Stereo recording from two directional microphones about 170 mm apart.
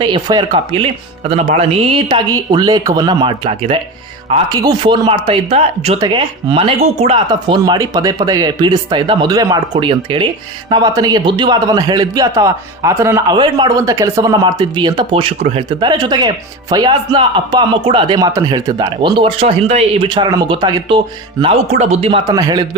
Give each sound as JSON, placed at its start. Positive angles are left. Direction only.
{"t": 0.0, "sound": "speech", "side_deg": -25}
{"t": 13.3, "sound": "speech", "side_deg": -25}
{"t": 20.1, "sound": "speech", "side_deg": -25}
{"t": 21.4, "sound": "speech", "side_deg": -40}
{"t": 22.2, "sound": "speech", "side_deg": -20}